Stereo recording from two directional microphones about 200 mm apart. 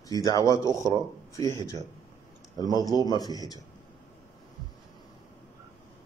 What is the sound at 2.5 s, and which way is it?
Speech, 20° left (ahead or behind).